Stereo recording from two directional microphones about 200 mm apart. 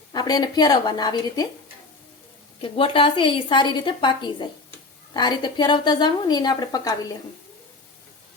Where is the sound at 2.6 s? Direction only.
25° left (ahead or behind).